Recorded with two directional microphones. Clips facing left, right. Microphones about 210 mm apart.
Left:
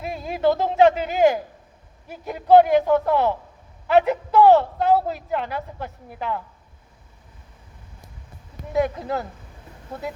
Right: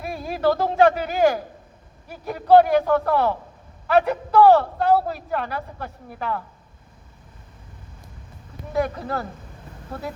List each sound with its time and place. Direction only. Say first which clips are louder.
0.0 s a man's voice: left 1 dB; 20° left (ahead or behind)
8.7 s a man's voice: left 2 dB; 20° left (ahead or behind)